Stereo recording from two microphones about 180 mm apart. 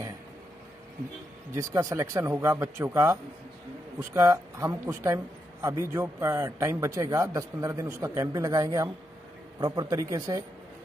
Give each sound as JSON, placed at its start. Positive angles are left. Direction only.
{"t": 1.5, "sound": "a man's voice", "side_deg": -15}